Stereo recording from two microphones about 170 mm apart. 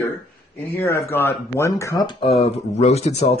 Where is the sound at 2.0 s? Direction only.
30° left (ahead or behind).